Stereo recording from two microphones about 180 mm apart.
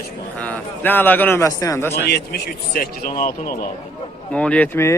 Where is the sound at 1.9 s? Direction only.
65° left (ahead or behind).